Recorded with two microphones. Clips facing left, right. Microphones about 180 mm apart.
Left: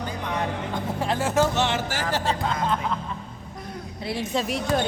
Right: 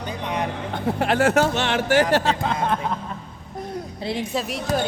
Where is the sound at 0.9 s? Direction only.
70° right (ahead or behind).